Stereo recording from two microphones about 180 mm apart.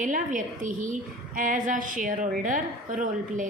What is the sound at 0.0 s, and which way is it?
A woman's voice, 45° right (ahead or behind).